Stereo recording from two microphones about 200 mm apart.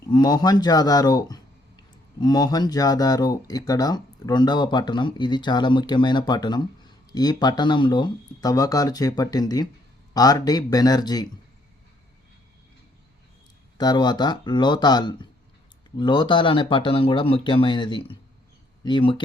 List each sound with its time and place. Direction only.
0.1 s speech: 20° left (ahead or behind)
13.7 s speech: 20° left (ahead or behind)